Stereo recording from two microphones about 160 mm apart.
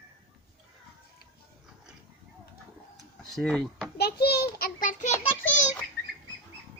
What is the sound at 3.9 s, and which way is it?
A child's voice, 85° left.